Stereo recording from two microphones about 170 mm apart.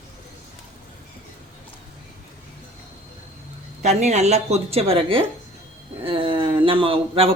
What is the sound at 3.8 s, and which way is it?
A woman's voice, 40° right (ahead or behind).